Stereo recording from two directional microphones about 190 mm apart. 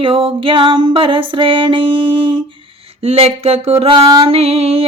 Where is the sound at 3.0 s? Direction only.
30° right (ahead or behind).